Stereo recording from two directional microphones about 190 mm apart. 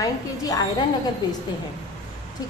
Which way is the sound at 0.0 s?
20° left (ahead or behind).